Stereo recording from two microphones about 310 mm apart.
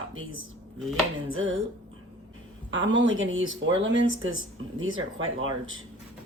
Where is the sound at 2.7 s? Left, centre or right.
Right.